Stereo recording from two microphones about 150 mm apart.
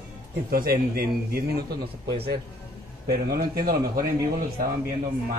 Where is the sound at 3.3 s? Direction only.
80° right.